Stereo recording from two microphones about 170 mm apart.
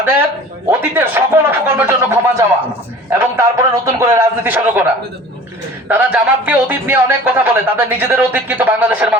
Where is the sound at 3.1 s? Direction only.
15° right (ahead or behind).